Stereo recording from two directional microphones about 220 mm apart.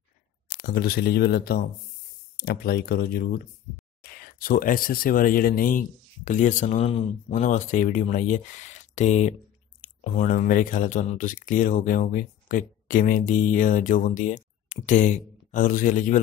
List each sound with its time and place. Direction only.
0.6 s speech: 40° left (ahead or behind)